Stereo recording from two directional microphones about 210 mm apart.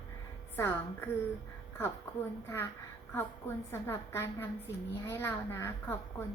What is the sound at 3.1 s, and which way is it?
A woman's voice, 10° left (ahead or behind).